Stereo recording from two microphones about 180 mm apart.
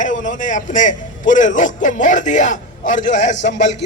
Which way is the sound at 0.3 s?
45° left (ahead or behind).